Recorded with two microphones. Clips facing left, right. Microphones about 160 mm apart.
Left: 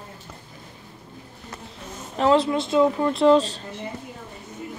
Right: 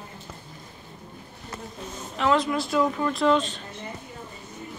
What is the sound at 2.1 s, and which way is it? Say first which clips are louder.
Speech: left 4 dB; 30° left (ahead or behind).